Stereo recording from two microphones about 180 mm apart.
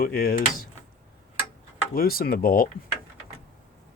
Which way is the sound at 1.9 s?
55° left (ahead or behind).